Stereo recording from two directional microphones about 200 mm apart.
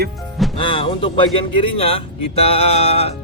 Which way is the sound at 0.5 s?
25° left (ahead or behind).